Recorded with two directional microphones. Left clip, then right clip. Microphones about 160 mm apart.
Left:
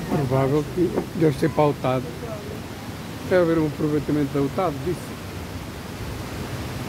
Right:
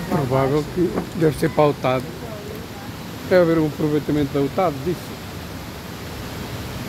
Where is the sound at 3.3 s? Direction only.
15° right (ahead or behind).